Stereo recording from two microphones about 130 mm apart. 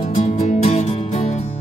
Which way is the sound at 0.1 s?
60° left (ahead or behind).